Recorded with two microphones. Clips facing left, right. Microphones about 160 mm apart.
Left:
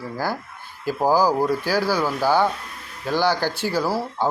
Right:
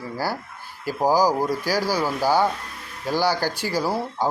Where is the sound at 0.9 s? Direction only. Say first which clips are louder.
Left 1 dB; 10° right (ahead or behind).